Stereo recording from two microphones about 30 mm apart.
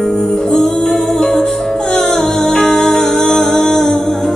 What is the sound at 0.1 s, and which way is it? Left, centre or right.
Music, left.